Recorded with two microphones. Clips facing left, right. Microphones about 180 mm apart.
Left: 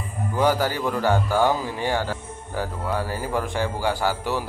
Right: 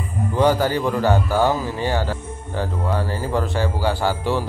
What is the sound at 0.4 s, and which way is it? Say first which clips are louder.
Speech: right 3 dB; 10° left (ahead or behind).